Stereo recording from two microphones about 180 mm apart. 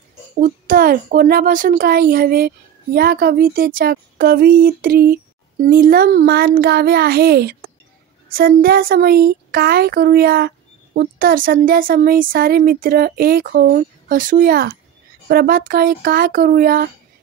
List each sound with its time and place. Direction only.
0.4 s speech: 50° right (ahead or behind)